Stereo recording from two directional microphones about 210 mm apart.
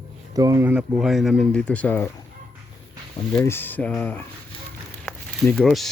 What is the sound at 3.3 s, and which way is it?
Speech, 10° left (ahead or behind).